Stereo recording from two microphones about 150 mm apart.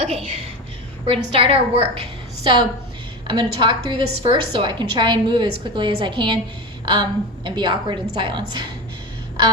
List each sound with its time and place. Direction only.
1.0 s a woman's voice: 40° right (ahead or behind)